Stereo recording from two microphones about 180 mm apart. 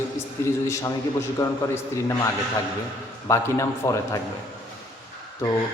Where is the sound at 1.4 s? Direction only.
15° left (ahead or behind).